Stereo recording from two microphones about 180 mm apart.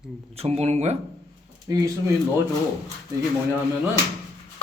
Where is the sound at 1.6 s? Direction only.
20° right (ahead or behind).